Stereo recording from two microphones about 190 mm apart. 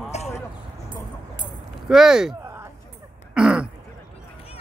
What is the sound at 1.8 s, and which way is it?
Speech, 5° right (ahead or behind).